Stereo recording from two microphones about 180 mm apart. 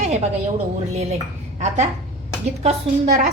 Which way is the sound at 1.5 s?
40° right (ahead or behind).